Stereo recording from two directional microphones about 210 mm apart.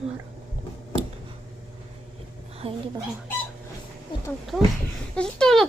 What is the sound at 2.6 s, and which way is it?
Speech, 25° right (ahead or behind).